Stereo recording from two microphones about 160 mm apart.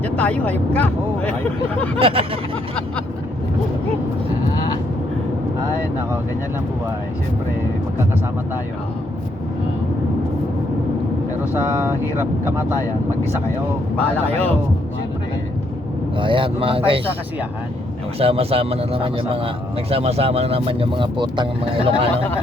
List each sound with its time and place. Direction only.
0.0 s speech: 10° left (ahead or behind)
2.0 s speech: 35° right (ahead or behind)
13.9 s speech: 10° left (ahead or behind)
16.1 s speech: 30° right (ahead or behind)
18.2 s speech: 35° right (ahead or behind)